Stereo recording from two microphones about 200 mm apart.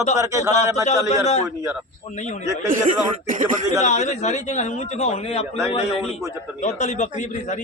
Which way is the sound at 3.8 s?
35° left (ahead or behind).